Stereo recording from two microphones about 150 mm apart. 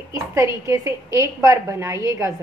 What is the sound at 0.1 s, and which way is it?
A woman's voice, 20° right (ahead or behind).